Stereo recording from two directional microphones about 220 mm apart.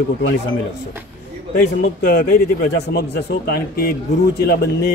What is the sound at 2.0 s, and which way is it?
A man's voice, 40° left (ahead or behind).